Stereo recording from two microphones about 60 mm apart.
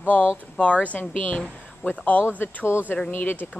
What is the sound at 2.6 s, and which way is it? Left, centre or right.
Speech, centre.